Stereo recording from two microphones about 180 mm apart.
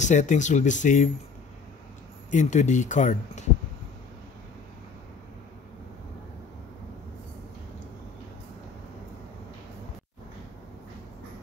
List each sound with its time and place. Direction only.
0.0 s speech: 40° left (ahead or behind)
2.3 s speech: 40° left (ahead or behind)